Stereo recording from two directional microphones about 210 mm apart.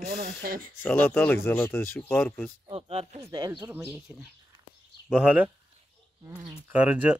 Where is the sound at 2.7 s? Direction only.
25° right (ahead or behind).